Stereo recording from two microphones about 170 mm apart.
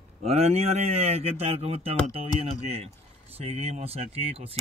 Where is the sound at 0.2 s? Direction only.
40° right (ahead or behind).